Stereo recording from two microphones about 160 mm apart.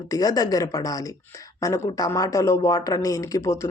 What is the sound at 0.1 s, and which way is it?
Speech, 20° left (ahead or behind).